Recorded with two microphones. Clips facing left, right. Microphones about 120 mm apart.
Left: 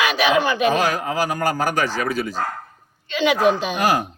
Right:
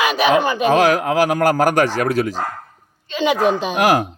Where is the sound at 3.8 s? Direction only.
90° right.